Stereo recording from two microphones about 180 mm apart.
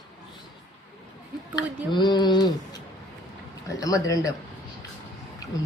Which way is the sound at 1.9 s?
25° left (ahead or behind).